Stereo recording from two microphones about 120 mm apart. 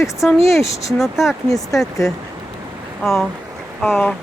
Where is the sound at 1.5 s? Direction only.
30° left (ahead or behind).